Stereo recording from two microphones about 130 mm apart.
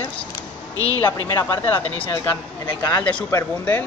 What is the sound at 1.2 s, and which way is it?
Speech, 25° left (ahead or behind).